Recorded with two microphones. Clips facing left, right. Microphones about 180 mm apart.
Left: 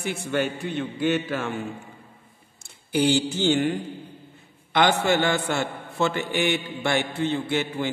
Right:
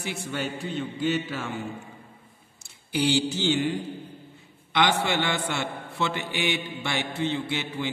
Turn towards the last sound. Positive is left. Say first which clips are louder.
# left 4 dB
turn(degrees=50)  # may be behind; listen again after turning